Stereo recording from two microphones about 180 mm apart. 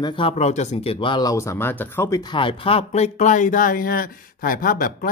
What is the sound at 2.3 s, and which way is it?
Speech, 30° left (ahead or behind).